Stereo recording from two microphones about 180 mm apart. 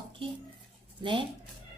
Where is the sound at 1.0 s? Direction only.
25° right (ahead or behind).